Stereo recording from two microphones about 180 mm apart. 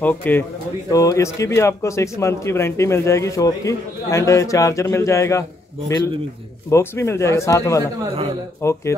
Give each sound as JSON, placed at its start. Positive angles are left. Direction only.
{"t": 0.0, "sound": "a man's voice", "side_deg": 10}
{"t": 6.7, "sound": "a man's voice", "side_deg": 15}